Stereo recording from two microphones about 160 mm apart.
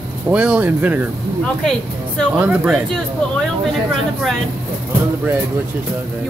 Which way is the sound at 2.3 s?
5° right (ahead or behind).